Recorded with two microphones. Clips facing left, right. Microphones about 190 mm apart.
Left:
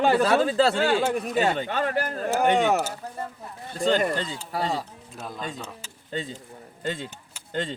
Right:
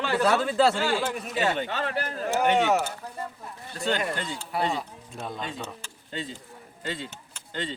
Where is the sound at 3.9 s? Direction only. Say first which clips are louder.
Left 3 dB; 40° left (ahead or behind).